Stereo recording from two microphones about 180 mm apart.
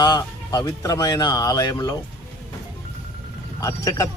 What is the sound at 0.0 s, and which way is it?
Speech, 20° left (ahead or behind).